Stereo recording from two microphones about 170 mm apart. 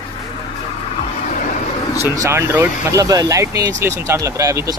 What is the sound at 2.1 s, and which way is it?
Speech, 15° right (ahead or behind).